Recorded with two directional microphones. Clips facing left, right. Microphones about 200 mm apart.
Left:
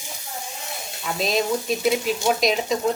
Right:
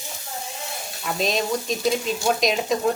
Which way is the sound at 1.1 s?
Centre (ahead or behind).